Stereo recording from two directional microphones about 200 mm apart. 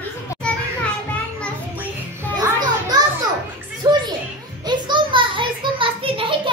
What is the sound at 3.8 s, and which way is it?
Music, 20° right (ahead or behind).